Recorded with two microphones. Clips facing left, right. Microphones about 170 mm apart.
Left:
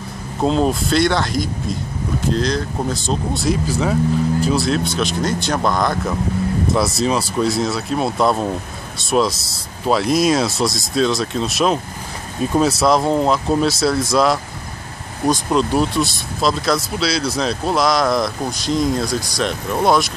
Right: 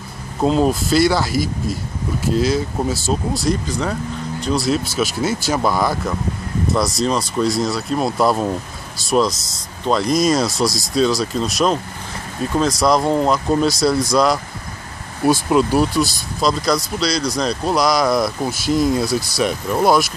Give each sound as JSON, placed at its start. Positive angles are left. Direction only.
{"t": 0.4, "sound": "speech", "side_deg": 0}
{"t": 9.3, "sound": "speech", "side_deg": 30}
{"t": 9.8, "sound": "speech", "side_deg": 5}